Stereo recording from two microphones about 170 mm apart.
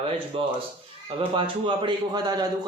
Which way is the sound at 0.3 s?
35° right (ahead or behind).